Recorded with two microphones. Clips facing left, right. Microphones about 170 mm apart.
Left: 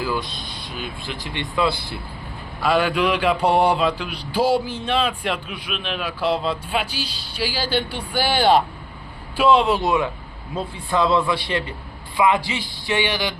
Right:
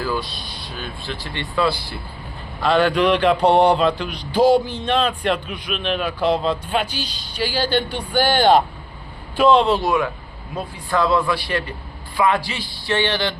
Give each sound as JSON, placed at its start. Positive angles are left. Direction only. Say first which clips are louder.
{"t": 0.0, "sound": "speech", "louder": "right 1 dB", "side_deg": 15}
{"t": 2.6, "sound": "a man's voice", "louder": "right 2 dB", "side_deg": 10}
{"t": 9.8, "sound": "speech", "louder": "right 1 dB", "side_deg": 20}